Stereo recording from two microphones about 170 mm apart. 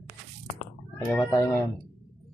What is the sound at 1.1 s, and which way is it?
Speech, 15° left (ahead or behind).